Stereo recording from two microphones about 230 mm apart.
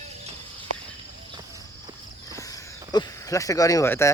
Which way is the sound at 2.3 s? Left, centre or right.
Centre.